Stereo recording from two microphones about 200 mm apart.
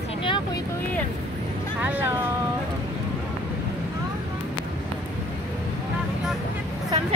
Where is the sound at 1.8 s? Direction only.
10° right (ahead or behind).